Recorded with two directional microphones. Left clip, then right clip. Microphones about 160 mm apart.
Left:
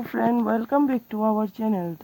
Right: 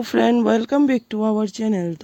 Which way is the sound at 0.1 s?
75° right (ahead or behind).